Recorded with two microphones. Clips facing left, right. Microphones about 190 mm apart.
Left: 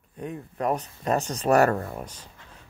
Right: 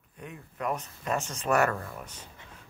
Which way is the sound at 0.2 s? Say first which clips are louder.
Left 6 dB; 35° left (ahead or behind).